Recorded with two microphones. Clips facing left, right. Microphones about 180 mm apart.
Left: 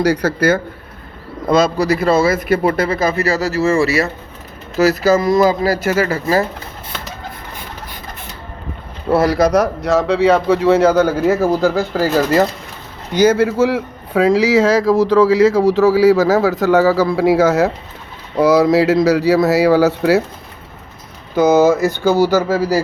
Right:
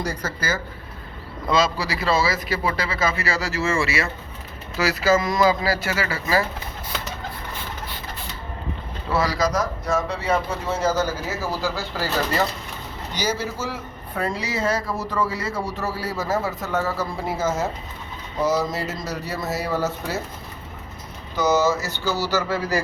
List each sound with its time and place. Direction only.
0.0 s speech: 70° left (ahead or behind)
1.5 s a man's voice: 45° left (ahead or behind)
9.0 s a man's voice: 60° left (ahead or behind)
13.1 s a man's voice: 55° left (ahead or behind); by 20.2 s 75° left (ahead or behind)
21.3 s a man's voice: 55° left (ahead or behind)